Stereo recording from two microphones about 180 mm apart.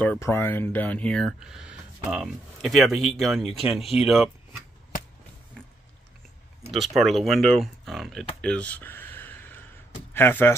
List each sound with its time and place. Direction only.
0.0 s speech: 10° left (ahead or behind)
7.0 s speech: centre (ahead or behind)
8.4 s a sound: 5° left (ahead or behind)
10.1 s speech: 10° left (ahead or behind)